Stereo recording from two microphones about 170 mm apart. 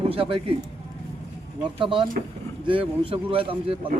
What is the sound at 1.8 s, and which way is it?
Speech, 30° right (ahead or behind).